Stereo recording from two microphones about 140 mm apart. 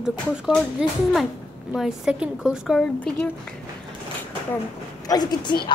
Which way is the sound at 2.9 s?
10° left (ahead or behind).